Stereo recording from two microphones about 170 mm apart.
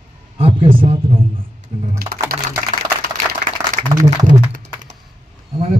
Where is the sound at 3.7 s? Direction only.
55° right (ahead or behind).